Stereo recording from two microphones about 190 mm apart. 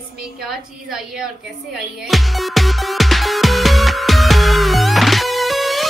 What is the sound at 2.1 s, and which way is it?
Music, centre (ahead or behind).